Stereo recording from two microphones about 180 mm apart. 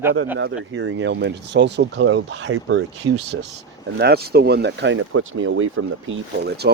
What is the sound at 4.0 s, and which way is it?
Speech, 65° right (ahead or behind).